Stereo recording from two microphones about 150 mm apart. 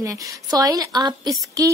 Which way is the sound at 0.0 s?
20° right (ahead or behind).